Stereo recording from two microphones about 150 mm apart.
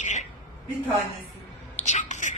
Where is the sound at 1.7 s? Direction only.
50° left (ahead or behind).